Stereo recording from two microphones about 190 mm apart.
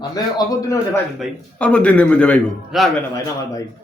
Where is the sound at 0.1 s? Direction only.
20° left (ahead or behind).